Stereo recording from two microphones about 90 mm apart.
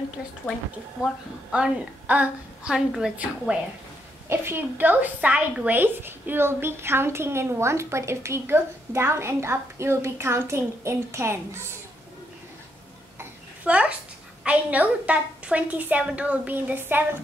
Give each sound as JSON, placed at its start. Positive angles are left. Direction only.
{"t": 1.5, "sound": "a woman's voice", "side_deg": -15}
{"t": 4.3, "sound": "a woman's voice", "side_deg": -25}
{"t": 13.7, "sound": "a woman's voice", "side_deg": -15}